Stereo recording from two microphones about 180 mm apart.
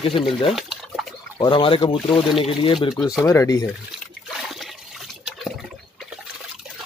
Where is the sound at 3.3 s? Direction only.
20° left (ahead or behind).